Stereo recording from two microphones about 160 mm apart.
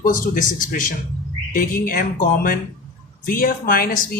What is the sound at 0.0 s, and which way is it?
Speech, 60° left (ahead or behind).